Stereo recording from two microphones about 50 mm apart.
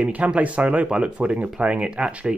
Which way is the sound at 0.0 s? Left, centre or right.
Right.